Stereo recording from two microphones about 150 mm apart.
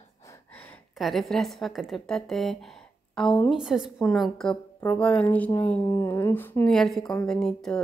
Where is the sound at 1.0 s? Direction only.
Centre (ahead or behind).